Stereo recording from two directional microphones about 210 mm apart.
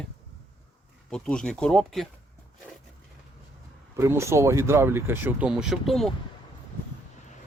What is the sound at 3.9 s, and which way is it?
Speech, 15° right (ahead or behind).